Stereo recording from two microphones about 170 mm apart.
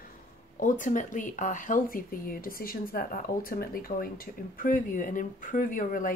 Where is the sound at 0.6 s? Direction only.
50° left (ahead or behind).